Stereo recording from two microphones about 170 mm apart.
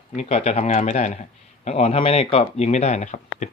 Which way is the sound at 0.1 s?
40° left (ahead or behind).